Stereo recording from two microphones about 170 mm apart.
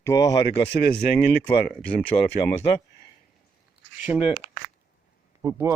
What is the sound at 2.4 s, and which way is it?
Speech, 25° left (ahead or behind).